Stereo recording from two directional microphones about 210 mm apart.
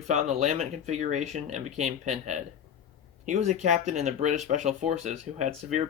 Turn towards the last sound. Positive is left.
turn(degrees=-35)  # may be behind; listen again after turning